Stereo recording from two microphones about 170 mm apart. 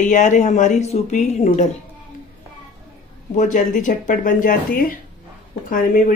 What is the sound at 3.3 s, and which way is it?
Speech, 45° left (ahead or behind).